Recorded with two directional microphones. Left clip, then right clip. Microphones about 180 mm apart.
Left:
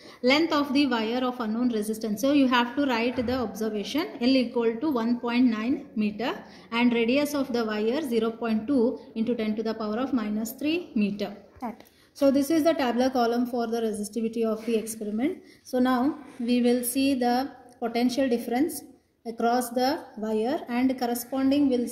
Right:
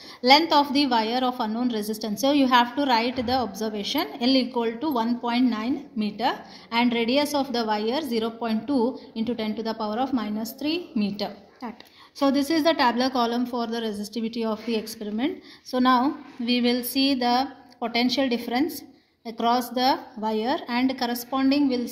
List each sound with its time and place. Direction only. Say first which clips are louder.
0.2 s a woman's voice: right 5 dB; 45° right (ahead or behind)